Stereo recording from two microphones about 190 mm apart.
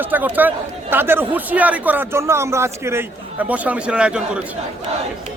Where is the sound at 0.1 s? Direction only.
10° right (ahead or behind).